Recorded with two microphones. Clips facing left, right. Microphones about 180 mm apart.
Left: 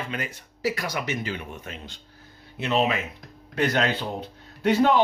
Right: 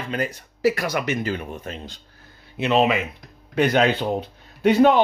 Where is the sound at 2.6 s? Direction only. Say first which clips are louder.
Right 5 dB; 75° right (ahead or behind).